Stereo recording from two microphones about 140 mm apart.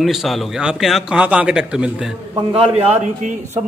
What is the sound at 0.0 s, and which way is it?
A man's voice, centre (ahead or behind).